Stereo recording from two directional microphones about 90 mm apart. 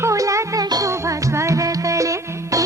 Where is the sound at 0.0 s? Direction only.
35° right (ahead or behind).